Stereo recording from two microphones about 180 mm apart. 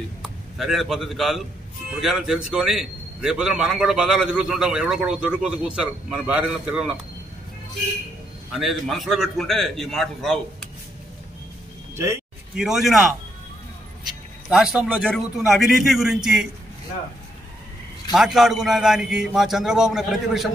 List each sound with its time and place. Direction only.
0.2 s a man's voice: centre (ahead or behind)
8.5 s a man's voice: centre (ahead or behind)
11.9 s speech: 15° right (ahead or behind)
12.5 s a man's voice: centre (ahead or behind)
14.5 s a man's voice: 5° right (ahead or behind)
18.1 s a man's voice: centre (ahead or behind)